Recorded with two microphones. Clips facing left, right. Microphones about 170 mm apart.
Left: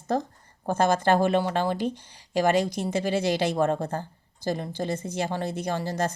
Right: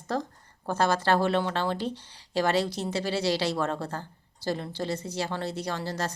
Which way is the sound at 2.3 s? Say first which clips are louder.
Left 3 dB; 15° left (ahead or behind).